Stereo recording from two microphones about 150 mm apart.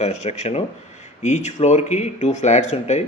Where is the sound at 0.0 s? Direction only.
45° left (ahead or behind).